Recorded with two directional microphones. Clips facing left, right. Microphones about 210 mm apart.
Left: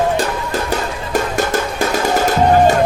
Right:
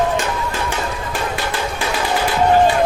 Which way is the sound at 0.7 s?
45° left (ahead or behind).